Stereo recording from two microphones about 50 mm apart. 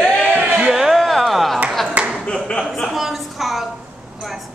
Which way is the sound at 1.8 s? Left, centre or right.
Right.